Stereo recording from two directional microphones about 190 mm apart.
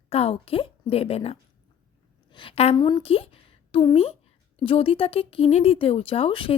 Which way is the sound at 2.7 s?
20° left (ahead or behind).